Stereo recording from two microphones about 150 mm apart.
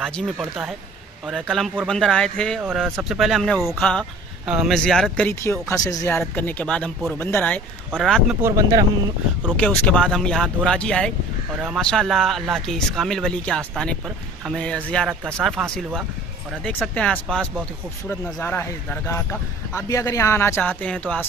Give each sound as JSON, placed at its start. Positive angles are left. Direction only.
{"t": 0.0, "sound": "speech", "side_deg": 0}
{"t": 5.3, "sound": "speech", "side_deg": 15}
{"t": 7.9, "sound": "speech", "side_deg": 0}
{"t": 8.4, "sound": "speech", "side_deg": -20}
{"t": 9.6, "sound": "speech", "side_deg": 10}